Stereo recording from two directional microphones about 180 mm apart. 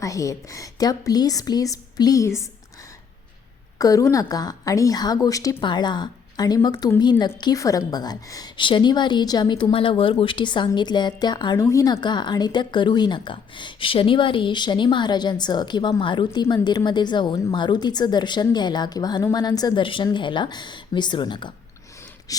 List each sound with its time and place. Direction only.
0.0 s a woman's voice: 20° left (ahead or behind)
3.8 s a woman's voice: 20° left (ahead or behind)
22.3 s a sound: 20° left (ahead or behind)